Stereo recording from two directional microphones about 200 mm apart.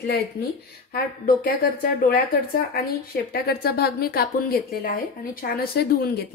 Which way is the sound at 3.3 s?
50° left (ahead or behind).